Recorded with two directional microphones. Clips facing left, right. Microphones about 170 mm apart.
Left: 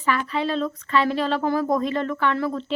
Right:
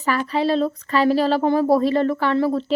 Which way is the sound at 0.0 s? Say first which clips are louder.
Right 3 dB; 40° right (ahead or behind).